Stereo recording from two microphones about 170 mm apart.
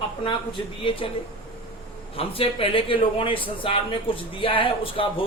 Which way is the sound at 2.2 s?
30° left (ahead or behind).